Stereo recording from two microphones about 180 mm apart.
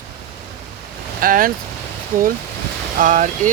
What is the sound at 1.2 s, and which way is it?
Speech, 50° right (ahead or behind).